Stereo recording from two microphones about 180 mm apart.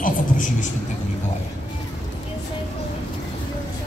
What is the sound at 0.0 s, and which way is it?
Vehicle, 45° left (ahead or behind).